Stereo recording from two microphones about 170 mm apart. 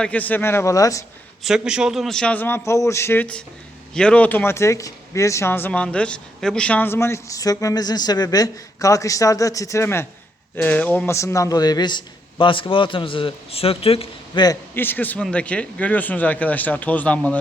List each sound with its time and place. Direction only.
0.0 s speech: 10° left (ahead or behind)
1.5 s speech: 5° right (ahead or behind); by 14.4 s 35° left (ahead or behind)
14.4 s speech: 15° left (ahead or behind)